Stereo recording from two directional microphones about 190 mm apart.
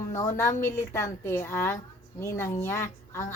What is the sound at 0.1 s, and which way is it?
A woman's voice, 15° left (ahead or behind).